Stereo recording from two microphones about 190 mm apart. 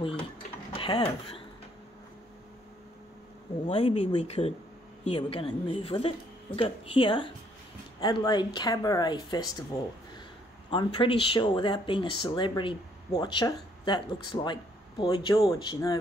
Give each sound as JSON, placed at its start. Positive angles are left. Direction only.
{"t": 0.7, "sound": "speech", "side_deg": 30}
{"t": 3.6, "sound": "speech", "side_deg": 35}
{"t": 10.7, "sound": "speech", "side_deg": 25}